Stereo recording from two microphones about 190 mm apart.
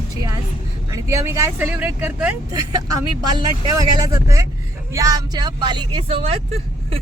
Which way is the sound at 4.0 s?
15° right (ahead or behind).